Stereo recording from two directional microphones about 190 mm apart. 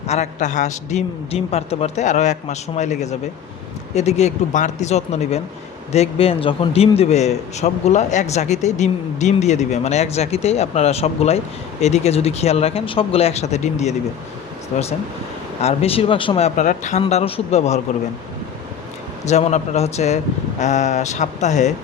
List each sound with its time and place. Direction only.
0.1 s a man's voice: 40° left (ahead or behind)
15.6 s speech: 30° left (ahead or behind)
16.6 s a man's voice: 40° left (ahead or behind)
19.2 s a man's voice: 35° left (ahead or behind)